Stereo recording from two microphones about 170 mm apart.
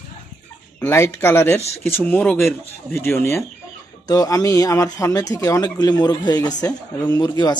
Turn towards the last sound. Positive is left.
turn(degrees=20)  # may be behind; listen again after turning